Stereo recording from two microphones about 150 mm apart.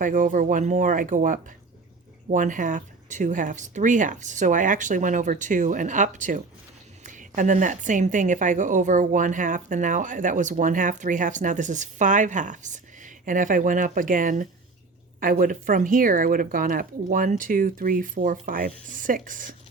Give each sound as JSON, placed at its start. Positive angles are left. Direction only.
{"t": 0.0, "sound": "a woman's voice", "side_deg": -60}